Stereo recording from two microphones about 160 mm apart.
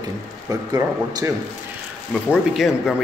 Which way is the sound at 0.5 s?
25° right (ahead or behind).